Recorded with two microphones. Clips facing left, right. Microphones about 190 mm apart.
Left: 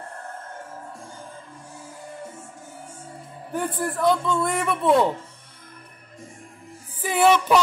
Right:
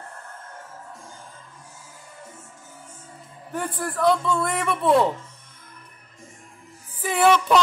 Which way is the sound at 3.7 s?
25° left (ahead or behind).